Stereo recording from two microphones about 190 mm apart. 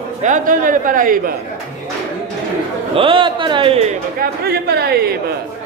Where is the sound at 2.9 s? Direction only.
25° right (ahead or behind).